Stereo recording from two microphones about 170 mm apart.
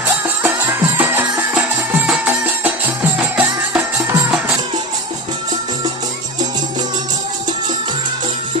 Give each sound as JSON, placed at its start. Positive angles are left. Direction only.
{"t": 0.1, "sound": "music", "side_deg": -10}